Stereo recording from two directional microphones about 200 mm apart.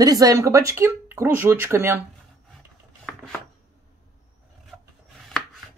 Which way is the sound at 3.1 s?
5° left (ahead or behind).